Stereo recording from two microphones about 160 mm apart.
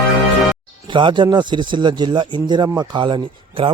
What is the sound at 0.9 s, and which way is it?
Speech, 30° right (ahead or behind).